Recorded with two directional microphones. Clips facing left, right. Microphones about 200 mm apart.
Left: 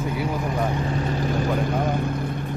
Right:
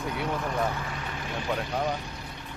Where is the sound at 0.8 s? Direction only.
35° left (ahead or behind).